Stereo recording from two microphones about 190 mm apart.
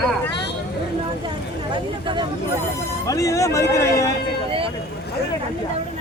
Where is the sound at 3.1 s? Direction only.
15° left (ahead or behind).